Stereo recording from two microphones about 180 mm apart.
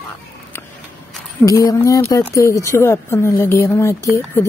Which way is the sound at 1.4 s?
20° left (ahead or behind).